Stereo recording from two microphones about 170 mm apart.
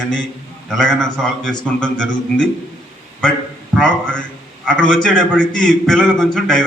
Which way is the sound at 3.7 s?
5° left (ahead or behind).